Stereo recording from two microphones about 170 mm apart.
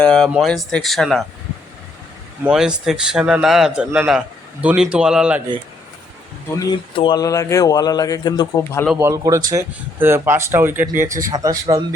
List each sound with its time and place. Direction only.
0.0 s a man's voice: 5° left (ahead or behind)
2.4 s a man's voice: 5° right (ahead or behind)
6.9 s a man's voice: 30° left (ahead or behind)
9.0 s speech: 20° right (ahead or behind)